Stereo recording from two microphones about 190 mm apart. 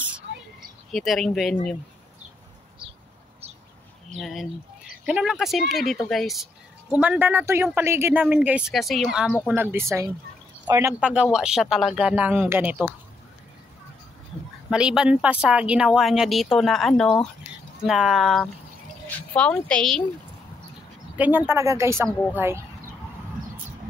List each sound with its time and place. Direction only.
0.9 s speech: centre (ahead or behind)
4.2 s speech: centre (ahead or behind)
9.6 s speech: 10° right (ahead or behind)
14.7 s speech: 5° right (ahead or behind)
21.2 s speech: 10° right (ahead or behind)